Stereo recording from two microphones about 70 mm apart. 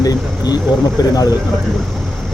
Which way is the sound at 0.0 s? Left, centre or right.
Left.